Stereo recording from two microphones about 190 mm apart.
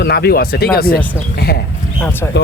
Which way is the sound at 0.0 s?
55° left (ahead or behind).